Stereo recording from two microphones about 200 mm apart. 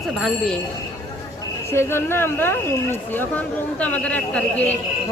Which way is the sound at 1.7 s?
10° left (ahead or behind).